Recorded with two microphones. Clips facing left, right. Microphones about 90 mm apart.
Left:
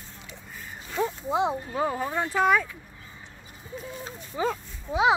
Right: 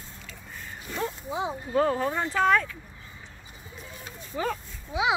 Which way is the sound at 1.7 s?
10° left (ahead or behind).